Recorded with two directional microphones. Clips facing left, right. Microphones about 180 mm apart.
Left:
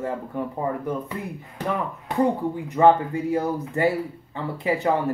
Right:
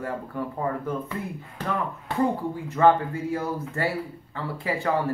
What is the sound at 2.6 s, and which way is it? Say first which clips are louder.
Speech: left 2 dB; 15° left (ahead or behind).